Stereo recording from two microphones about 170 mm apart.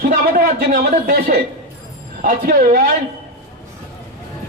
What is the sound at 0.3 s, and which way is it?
Speech, 55° right (ahead or behind).